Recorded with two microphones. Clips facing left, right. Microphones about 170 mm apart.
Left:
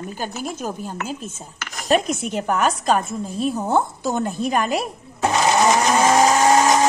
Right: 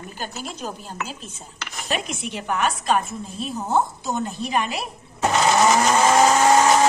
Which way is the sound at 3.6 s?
55° left (ahead or behind).